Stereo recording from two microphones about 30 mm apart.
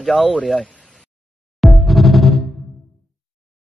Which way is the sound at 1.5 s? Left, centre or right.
Centre.